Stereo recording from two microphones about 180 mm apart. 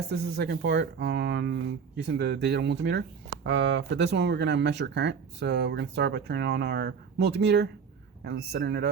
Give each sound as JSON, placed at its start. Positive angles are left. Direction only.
{"t": 0.1, "sound": "speech", "side_deg": -65}